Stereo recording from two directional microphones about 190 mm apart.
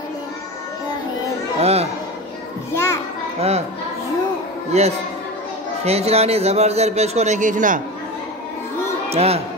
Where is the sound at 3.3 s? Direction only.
35° right (ahead or behind).